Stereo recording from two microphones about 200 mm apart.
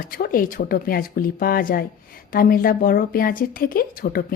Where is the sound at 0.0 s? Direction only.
45° left (ahead or behind).